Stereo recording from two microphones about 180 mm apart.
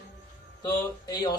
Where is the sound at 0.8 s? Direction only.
25° left (ahead or behind).